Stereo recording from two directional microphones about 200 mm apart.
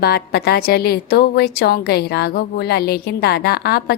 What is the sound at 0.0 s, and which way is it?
A woman's voice, 50° left (ahead or behind).